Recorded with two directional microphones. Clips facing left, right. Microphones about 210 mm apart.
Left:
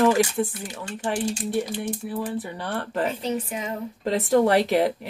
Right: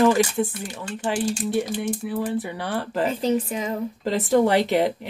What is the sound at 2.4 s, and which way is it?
Speech, 5° right (ahead or behind).